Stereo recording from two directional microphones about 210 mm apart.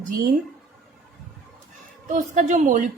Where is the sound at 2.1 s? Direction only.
35° right (ahead or behind).